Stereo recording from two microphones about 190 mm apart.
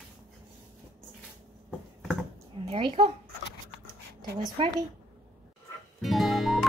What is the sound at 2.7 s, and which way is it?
Speech, 25° right (ahead or behind).